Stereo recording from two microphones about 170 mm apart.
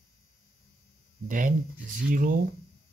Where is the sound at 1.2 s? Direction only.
50° right (ahead or behind).